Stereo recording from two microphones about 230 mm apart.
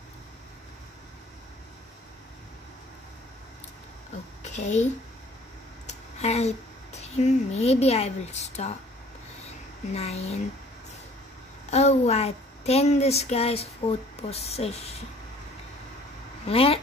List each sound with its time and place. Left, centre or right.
4.5 s speech: left
5.9 s speech: left
9.9 s speech: left
11.7 s speech: left
16.4 s speech: left